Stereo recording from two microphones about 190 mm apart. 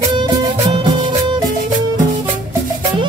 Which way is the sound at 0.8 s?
25° right (ahead or behind).